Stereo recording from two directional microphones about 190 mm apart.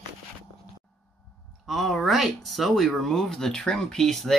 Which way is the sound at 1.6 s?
Centre (ahead or behind).